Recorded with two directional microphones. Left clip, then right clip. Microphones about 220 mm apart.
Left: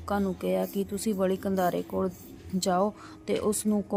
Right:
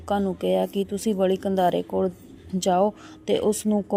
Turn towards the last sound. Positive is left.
turn(degrees=-15)  # may be behind; listen again after turning